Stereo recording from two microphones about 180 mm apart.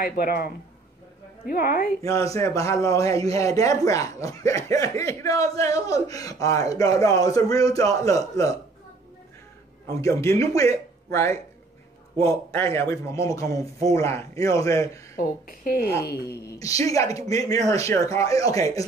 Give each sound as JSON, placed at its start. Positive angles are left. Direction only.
{"t": 0.0, "sound": "speech", "side_deg": 55}
{"t": 1.5, "sound": "a woman's voice", "side_deg": 55}
{"t": 2.0, "sound": "speech", "side_deg": 15}
{"t": 9.8, "sound": "a man's voice", "side_deg": 15}
{"t": 15.2, "sound": "a woman's voice", "side_deg": 55}
{"t": 16.5, "sound": "a woman's voice", "side_deg": 20}